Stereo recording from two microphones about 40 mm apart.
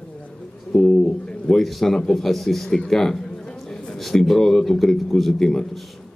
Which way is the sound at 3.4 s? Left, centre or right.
Centre.